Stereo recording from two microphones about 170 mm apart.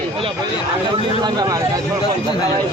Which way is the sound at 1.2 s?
20° right (ahead or behind).